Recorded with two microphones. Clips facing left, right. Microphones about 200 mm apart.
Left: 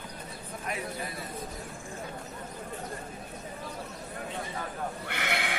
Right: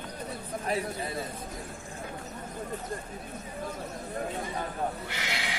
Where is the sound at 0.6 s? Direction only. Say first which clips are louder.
Right 4 dB; 30° right (ahead or behind).